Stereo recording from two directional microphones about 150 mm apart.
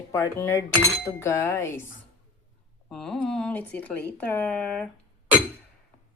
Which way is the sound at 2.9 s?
5° left (ahead or behind).